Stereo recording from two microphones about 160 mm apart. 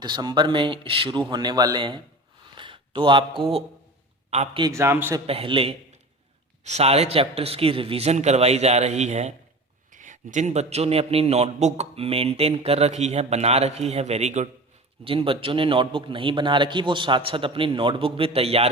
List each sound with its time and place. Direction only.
0.0 s speech: 25° right (ahead or behind); by 4.6 s 40° right (ahead or behind)
4.6 s a man's voice: 15° right (ahead or behind)
5.2 s a man's voice: 35° right (ahead or behind)
15.0 s a man's voice: 35° right (ahead or behind)